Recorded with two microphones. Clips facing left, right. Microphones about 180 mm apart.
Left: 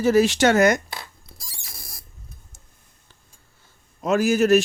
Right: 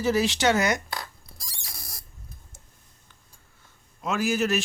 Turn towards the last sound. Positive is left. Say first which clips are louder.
# left 8 dB
turn(degrees=45)  # may be behind; listen again after turning